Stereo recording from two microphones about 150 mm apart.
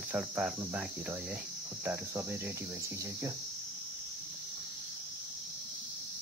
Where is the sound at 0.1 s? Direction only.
5° right (ahead or behind).